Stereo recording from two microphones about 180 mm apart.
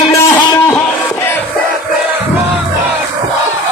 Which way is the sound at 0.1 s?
15° left (ahead or behind).